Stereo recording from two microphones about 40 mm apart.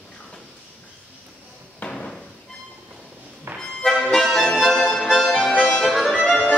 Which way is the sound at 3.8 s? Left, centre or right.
Centre.